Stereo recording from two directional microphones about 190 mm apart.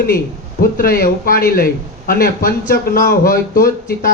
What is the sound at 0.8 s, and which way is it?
A man's voice, 50° left (ahead or behind).